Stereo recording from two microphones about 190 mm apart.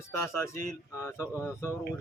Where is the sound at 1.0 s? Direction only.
15° left (ahead or behind).